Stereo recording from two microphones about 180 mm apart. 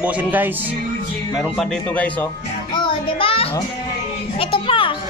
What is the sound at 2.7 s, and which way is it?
Music, 30° left (ahead or behind).